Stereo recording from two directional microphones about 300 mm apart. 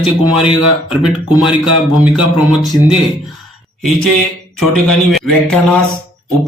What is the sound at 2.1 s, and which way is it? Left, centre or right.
Speech, centre.